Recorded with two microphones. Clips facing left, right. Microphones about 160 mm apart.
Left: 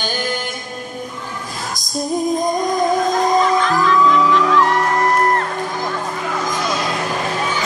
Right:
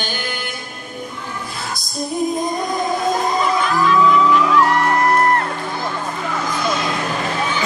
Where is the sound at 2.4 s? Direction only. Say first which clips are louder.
Left 3 dB; 45° left (ahead or behind).